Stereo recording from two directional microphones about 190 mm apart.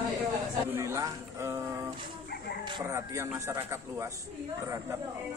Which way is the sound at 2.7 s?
15° right (ahead or behind).